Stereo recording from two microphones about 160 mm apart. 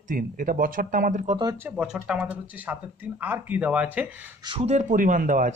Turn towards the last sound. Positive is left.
turn(degrees=-55)  # may be behind; listen again after turning